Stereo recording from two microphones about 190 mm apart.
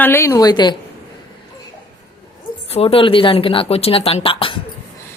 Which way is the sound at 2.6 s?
30° left (ahead or behind).